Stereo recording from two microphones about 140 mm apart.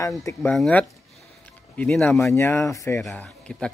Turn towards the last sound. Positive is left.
turn(degrees=5)  # may be behind; listen again after turning